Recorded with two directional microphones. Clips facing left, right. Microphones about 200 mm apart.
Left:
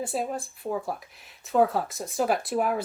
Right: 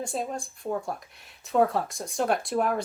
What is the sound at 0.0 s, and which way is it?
Speech, 5° left (ahead or behind).